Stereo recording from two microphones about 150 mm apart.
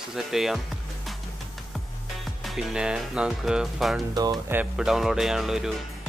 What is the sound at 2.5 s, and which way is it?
Speech, 5° right (ahead or behind).